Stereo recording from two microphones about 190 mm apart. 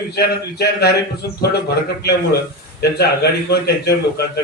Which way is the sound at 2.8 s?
60° left (ahead or behind).